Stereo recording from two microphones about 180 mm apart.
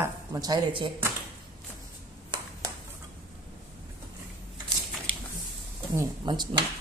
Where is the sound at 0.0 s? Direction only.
20° right (ahead or behind).